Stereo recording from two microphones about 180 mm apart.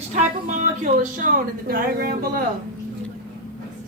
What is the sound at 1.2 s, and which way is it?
Speech, 55° right (ahead or behind).